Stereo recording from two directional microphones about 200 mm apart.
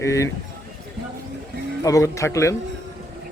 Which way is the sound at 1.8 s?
15° left (ahead or behind).